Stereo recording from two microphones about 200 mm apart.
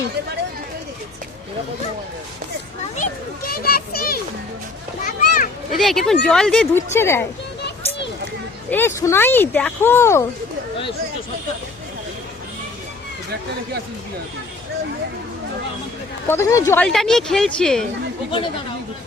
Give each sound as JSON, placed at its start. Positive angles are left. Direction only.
{"t": 3.5, "sound": "a child's voice", "side_deg": 50}
{"t": 5.0, "sound": "children playing", "side_deg": 45}
{"t": 5.7, "sound": "speech", "side_deg": 0}
{"t": 7.6, "sound": "a sound", "side_deg": 60}
{"t": 8.7, "sound": "speech", "side_deg": 10}
{"t": 16.3, "sound": "speech", "side_deg": 15}
{"t": 16.8, "sound": "speech", "side_deg": 0}